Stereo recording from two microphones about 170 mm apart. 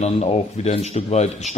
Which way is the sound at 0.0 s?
40° left (ahead or behind).